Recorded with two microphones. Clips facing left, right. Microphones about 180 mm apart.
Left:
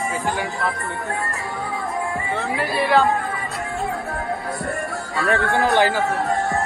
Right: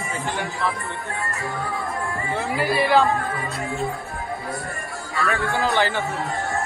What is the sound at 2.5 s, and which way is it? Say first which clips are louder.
Speech: even; centre (ahead or behind).